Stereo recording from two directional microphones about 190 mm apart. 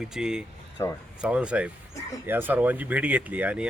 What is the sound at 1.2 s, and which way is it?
Speech, 5° right (ahead or behind).